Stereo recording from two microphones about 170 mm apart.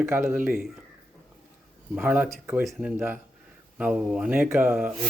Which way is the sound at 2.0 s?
10° right (ahead or behind).